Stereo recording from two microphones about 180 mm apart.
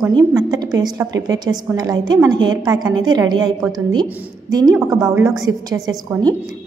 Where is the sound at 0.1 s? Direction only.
20° right (ahead or behind).